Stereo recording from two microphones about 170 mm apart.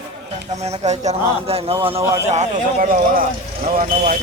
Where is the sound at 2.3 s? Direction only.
45° right (ahead or behind).